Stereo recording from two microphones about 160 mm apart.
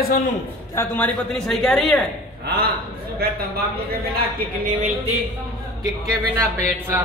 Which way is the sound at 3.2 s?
80° right.